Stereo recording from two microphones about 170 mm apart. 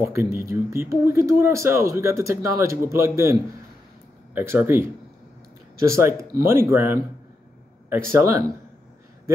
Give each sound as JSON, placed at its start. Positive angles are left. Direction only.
{"t": 0.1, "sound": "speech", "side_deg": -15}
{"t": 4.4, "sound": "speech", "side_deg": -10}
{"t": 5.9, "sound": "speech", "side_deg": -15}
{"t": 8.2, "sound": "speech", "side_deg": -15}